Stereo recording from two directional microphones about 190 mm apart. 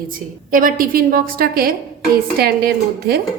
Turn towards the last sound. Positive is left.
turn(degrees=-55)  # may be behind; listen again after turning